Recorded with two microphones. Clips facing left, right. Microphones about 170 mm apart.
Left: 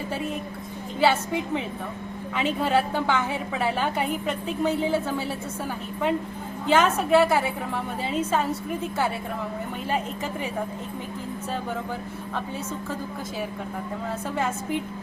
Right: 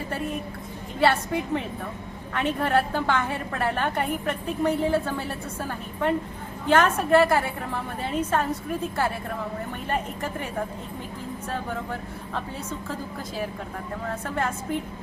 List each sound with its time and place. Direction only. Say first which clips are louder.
0.9 s a woman's voice: even; centre (ahead or behind)
11.5 s a woman's voice: even; 5° left (ahead or behind)
14.3 s a woman's voice: left 1 dB; 5° left (ahead or behind)